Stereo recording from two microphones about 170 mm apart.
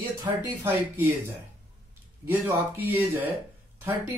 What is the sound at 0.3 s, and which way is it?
Speech, 20° right (ahead or behind).